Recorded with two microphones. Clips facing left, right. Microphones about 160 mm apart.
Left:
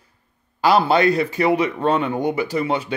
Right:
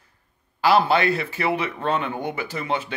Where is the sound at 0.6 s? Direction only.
40° left (ahead or behind).